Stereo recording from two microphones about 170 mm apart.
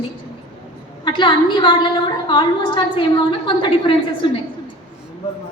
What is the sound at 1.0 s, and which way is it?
A woman's voice, 25° left (ahead or behind).